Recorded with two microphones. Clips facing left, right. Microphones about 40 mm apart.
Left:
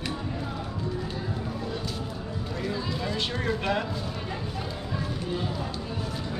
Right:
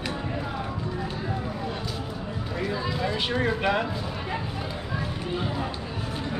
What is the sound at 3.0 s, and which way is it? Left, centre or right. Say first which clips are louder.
Speech: right 4 dB; centre.